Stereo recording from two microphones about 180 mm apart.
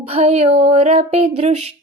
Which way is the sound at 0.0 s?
35° right (ahead or behind).